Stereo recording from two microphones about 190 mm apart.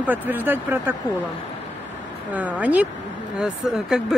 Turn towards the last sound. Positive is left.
turn(degrees=0)  # may be behind; listen again after turning